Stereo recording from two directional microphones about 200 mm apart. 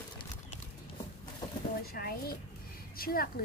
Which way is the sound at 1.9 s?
50° left (ahead or behind).